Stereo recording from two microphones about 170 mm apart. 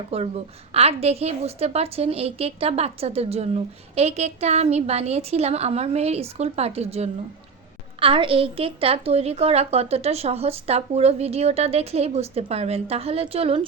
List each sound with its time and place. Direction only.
0.1 s a woman's voice: 35° right (ahead or behind)